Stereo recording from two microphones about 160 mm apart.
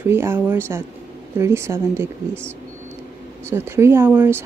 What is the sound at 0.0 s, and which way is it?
Speech, 15° right (ahead or behind).